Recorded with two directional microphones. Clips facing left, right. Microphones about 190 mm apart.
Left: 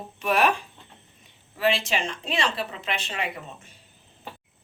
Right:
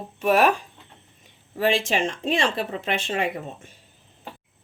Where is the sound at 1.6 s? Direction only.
45° right (ahead or behind).